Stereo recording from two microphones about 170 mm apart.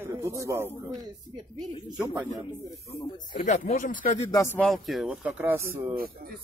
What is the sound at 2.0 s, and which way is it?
Speech, 10° right (ahead or behind).